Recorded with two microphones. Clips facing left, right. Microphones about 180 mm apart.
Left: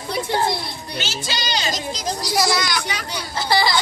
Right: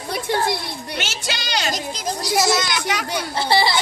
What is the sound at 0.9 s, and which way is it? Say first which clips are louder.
Speech: left 1 dB; 70° right (ahead or behind).